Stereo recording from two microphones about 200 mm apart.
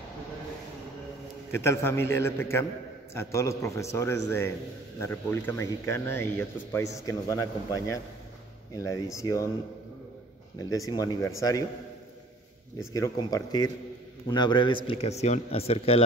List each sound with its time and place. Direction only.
1.5 s speech: 10° left (ahead or behind)
10.6 s speech: 15° left (ahead or behind)
12.9 s a man's voice: 15° left (ahead or behind)